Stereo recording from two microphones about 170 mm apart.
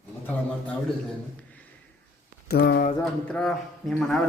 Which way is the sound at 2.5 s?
70° left (ahead or behind).